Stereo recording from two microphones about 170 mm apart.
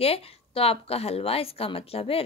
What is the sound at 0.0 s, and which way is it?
Speech, 35° left (ahead or behind).